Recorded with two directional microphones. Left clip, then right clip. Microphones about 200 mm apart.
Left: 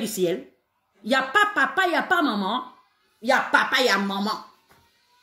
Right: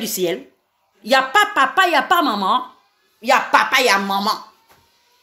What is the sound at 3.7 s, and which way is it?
Speech, 50° right (ahead or behind).